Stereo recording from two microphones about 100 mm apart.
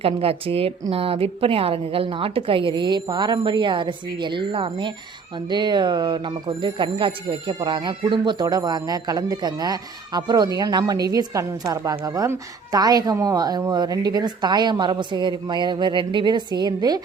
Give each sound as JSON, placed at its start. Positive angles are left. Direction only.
{"t": 0.0, "sound": "a woman's voice", "side_deg": -70}